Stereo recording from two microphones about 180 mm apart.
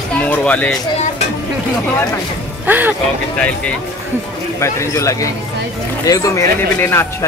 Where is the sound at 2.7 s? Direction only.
10° right (ahead or behind).